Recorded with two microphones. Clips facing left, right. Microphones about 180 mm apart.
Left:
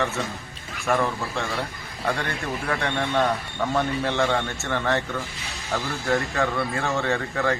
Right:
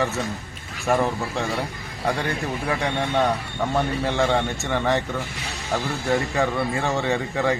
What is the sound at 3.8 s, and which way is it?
Speech, 10° right (ahead or behind).